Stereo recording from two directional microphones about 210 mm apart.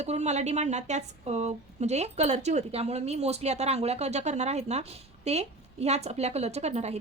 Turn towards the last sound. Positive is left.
turn(degrees=-30)  # may be behind; listen again after turning